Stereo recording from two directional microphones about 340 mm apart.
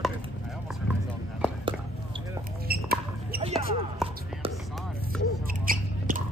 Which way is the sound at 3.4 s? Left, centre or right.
Centre.